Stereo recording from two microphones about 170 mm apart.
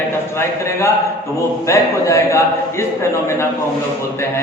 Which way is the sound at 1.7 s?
15° left (ahead or behind).